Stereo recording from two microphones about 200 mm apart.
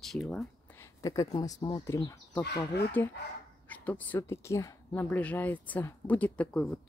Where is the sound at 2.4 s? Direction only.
55° left (ahead or behind).